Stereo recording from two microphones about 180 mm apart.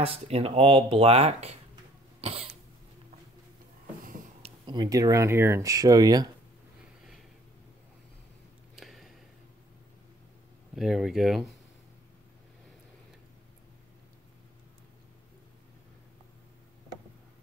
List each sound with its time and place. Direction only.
0.0 s speech: 30° right (ahead or behind)
2.2 s cough: 30° right (ahead or behind)
4.4 s speech: 25° right (ahead or behind)
8.7 s a sound: centre (ahead or behind)
10.7 s speech: centre (ahead or behind)